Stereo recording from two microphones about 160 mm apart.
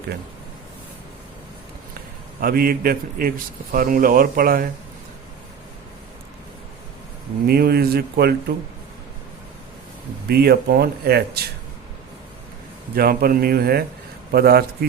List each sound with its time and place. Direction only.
2.4 s a man's voice: 65° right (ahead or behind)
7.4 s speech: 75° right (ahead or behind)
10.2 s speech: 75° right (ahead or behind)
13.0 s speech: 65° right (ahead or behind)